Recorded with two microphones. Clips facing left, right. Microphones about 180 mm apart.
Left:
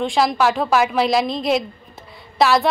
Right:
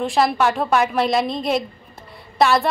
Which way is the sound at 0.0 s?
Centre (ahead or behind).